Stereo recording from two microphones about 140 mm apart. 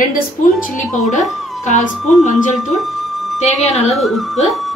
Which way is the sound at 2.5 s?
Centre (ahead or behind).